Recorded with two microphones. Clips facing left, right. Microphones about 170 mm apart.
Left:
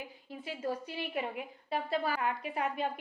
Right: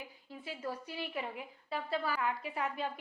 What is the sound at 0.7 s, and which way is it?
A woman's voice, 20° left (ahead or behind).